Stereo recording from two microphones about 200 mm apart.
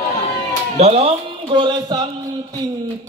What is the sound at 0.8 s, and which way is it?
Speech, 30° right (ahead or behind).